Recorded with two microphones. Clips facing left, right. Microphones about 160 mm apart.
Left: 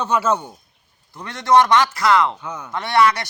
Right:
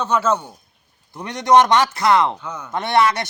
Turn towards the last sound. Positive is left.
turn(degrees=-25)  # may be behind; listen again after turning